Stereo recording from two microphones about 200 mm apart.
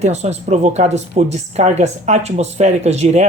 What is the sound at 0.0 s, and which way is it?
Speech, 35° right (ahead or behind).